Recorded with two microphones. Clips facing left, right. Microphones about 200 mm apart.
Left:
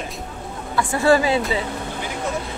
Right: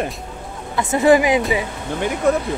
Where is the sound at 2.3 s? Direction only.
60° right (ahead or behind).